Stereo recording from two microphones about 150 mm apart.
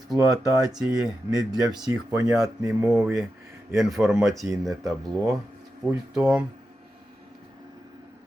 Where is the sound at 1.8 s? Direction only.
25° right (ahead or behind).